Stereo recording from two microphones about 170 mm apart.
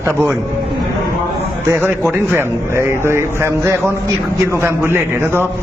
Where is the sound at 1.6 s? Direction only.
15° right (ahead or behind).